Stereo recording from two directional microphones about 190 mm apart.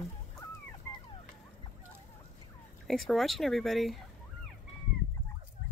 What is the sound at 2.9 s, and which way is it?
Speech, centre (ahead or behind).